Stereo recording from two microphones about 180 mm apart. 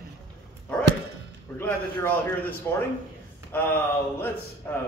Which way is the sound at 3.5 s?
10° left (ahead or behind).